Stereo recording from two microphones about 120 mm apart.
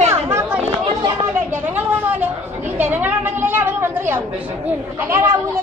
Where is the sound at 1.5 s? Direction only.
15° right (ahead or behind).